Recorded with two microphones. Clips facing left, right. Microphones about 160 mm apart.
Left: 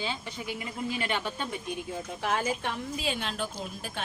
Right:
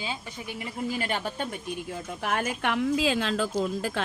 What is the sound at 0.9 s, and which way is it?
Speech, 40° right (ahead or behind).